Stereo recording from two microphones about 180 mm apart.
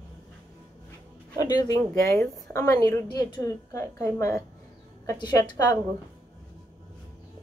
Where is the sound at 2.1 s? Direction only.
Centre (ahead or behind).